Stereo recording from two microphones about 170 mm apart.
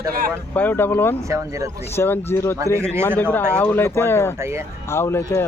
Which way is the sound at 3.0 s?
10° left (ahead or behind).